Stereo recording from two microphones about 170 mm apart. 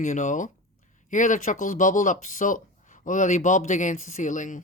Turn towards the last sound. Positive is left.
turn(degrees=50)  # may be behind; listen again after turning